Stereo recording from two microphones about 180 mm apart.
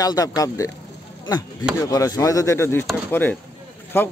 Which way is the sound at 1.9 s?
20° left (ahead or behind).